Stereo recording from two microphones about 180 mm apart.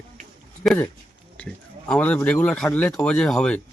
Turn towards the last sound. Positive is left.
turn(degrees=5)  # may be behind; listen again after turning